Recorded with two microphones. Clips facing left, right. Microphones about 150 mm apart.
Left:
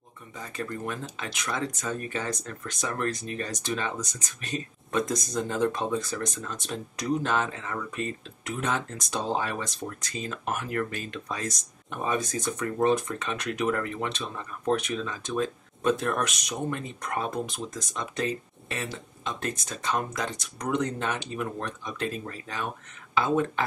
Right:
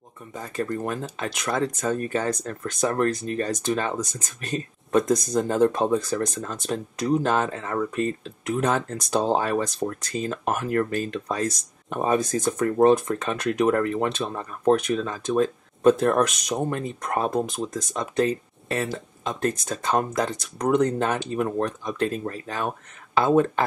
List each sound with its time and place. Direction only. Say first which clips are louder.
0.3 s speech: right 6 dB; 40° right (ahead or behind)